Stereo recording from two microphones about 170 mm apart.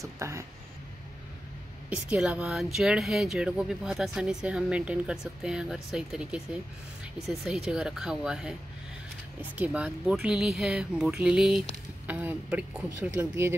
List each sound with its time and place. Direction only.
0.0 s speech: 15° right (ahead or behind)
1.9 s speech: 5° right (ahead or behind)